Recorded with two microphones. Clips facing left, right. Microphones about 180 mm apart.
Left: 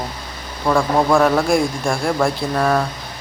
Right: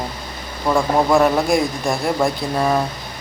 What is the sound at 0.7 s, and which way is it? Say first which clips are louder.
Speech: even; centre (ahead or behind).